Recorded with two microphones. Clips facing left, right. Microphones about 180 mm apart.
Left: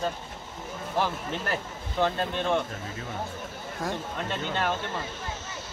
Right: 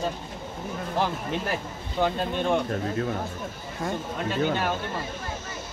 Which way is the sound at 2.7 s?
60° right (ahead or behind).